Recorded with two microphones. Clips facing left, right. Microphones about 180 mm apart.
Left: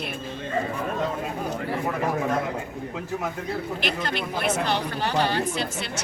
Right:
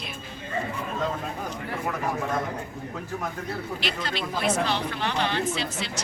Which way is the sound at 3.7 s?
50° left (ahead or behind).